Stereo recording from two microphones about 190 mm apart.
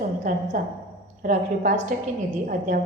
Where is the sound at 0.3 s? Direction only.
45° right (ahead or behind).